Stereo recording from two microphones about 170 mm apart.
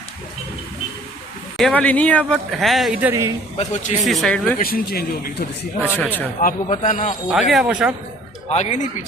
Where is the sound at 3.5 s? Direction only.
45° left (ahead or behind).